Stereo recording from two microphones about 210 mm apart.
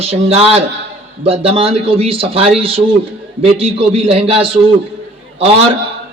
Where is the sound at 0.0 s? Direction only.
30° right (ahead or behind).